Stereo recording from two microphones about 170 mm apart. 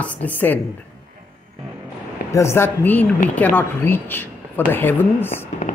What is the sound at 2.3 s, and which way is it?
Speech, 15° left (ahead or behind).